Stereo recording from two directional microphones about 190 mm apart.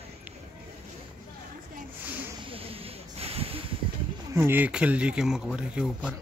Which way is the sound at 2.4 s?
30° right (ahead or behind).